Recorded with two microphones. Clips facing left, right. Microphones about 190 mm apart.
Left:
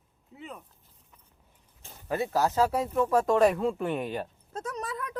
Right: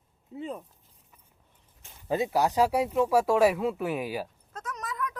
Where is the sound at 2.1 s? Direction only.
15° right (ahead or behind).